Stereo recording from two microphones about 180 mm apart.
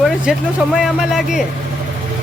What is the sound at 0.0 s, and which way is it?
Speech, centre (ahead or behind).